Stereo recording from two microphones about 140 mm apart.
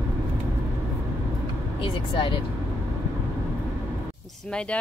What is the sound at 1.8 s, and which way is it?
Speech, 40° left (ahead or behind).